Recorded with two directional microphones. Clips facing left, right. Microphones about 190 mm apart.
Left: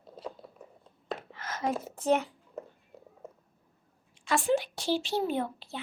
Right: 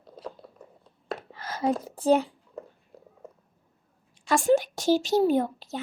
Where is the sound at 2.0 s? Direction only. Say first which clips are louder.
Right 5 dB; 35° right (ahead or behind).